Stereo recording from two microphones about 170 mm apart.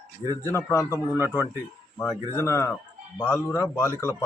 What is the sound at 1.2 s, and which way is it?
Speech, 10° right (ahead or behind).